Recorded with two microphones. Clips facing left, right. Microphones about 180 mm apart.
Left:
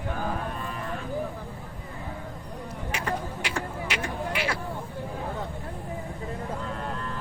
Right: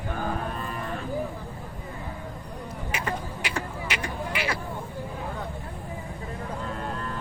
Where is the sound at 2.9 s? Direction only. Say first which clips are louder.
Left 1 dB; 5° right (ahead or behind).